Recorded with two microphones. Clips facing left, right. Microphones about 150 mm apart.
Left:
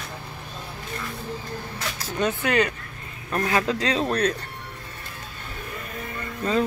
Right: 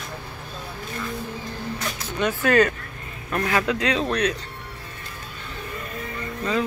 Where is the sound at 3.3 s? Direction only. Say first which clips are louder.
Even; 30° left (ahead or behind).